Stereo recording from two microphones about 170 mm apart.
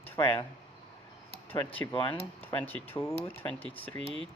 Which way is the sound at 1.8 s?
20° left (ahead or behind).